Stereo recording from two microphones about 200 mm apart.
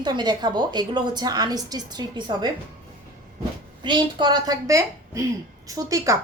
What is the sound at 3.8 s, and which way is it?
A woman's voice, 25° right (ahead or behind).